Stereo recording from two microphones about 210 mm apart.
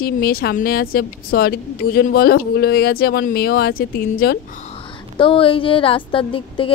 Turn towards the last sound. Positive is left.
turn(degrees=25)  # may be behind; listen again after turning